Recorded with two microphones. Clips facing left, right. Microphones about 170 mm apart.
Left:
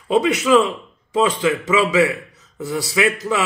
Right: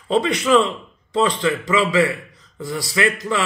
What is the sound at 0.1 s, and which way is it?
A man's voice, 10° left (ahead or behind).